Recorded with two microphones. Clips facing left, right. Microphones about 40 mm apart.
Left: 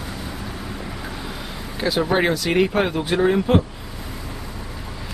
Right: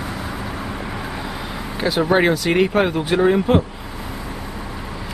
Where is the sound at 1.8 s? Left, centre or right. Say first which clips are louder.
Right 3 dB; centre.